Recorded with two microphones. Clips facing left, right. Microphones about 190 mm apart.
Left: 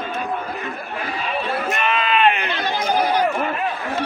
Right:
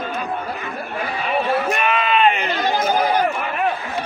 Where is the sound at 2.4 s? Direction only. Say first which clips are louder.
Right 3 dB; 45° right (ahead or behind).